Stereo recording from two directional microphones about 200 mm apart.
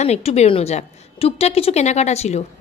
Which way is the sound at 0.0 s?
30° left (ahead or behind).